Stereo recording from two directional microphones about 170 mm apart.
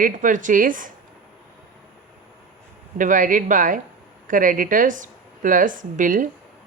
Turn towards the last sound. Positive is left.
turn(degrees=-50)  # may be behind; listen again after turning